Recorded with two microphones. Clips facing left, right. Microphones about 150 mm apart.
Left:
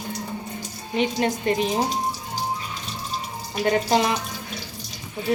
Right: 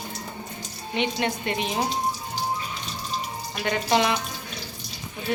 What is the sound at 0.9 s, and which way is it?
Speech, 40° left (ahead or behind).